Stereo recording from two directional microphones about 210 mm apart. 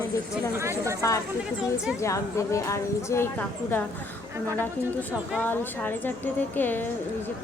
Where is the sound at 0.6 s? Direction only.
15° right (ahead or behind).